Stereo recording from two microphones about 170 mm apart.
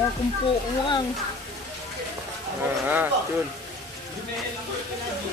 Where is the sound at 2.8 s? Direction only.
10° right (ahead or behind).